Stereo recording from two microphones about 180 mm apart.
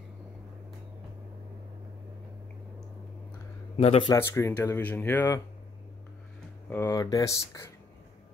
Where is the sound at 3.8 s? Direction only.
30° left (ahead or behind).